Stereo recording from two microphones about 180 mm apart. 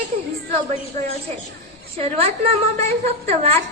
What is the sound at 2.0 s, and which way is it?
A woman's voice, 35° right (ahead or behind).